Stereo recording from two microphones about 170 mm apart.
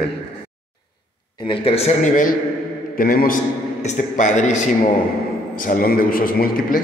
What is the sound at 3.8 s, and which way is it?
A man's voice, 45° left (ahead or behind).